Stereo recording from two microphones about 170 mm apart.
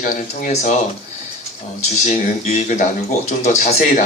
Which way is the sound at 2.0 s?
40° left (ahead or behind).